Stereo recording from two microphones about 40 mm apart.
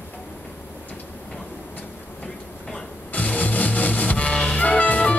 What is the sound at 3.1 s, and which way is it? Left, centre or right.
Music, left.